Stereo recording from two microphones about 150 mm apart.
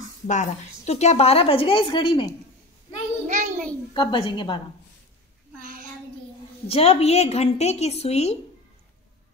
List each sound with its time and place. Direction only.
0.3 s a woman's voice: 50° left (ahead or behind); by 2.3 s 35° left (ahead or behind)
3.3 s a child's voice: 55° right (ahead or behind)
3.9 s a woman's voice: 35° left (ahead or behind)
6.7 s a woman's voice: 40° left (ahead or behind)